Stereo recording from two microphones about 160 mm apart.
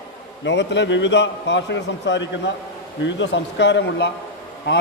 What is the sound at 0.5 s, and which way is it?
Speech, 90° left.